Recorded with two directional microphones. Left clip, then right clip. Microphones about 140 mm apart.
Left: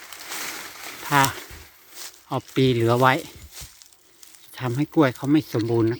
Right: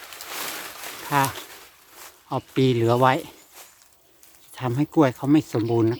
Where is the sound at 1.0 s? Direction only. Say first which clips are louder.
Left 3 dB; 20° left (ahead or behind).